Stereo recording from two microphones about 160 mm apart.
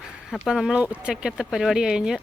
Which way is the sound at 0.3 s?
Centre (ahead or behind).